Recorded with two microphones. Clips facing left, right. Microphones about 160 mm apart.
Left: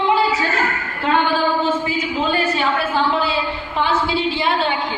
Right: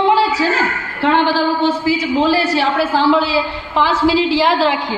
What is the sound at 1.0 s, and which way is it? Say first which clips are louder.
A woman's voice: right 3 dB; 85° right.